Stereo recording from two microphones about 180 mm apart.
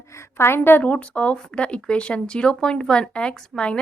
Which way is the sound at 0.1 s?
15° left (ahead or behind).